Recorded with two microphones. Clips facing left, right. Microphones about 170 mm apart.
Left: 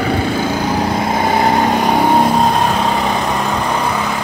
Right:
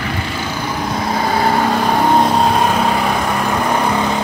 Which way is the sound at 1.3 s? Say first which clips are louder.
Left 1 dB; 20° left (ahead or behind).